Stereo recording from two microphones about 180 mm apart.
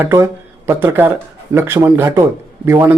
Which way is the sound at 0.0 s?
15° right (ahead or behind).